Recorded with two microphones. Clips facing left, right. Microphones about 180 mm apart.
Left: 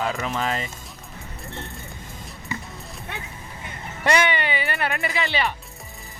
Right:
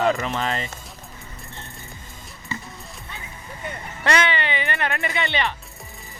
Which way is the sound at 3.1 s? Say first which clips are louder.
Left 5 dB; 70° left (ahead or behind).